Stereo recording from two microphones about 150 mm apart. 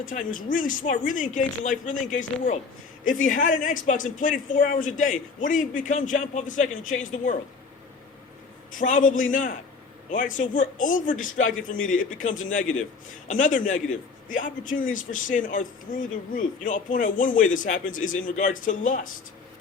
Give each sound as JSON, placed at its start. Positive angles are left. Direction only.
{"t": 0.0, "sound": "speech", "side_deg": 65}
{"t": 8.7, "sound": "speech", "side_deg": 60}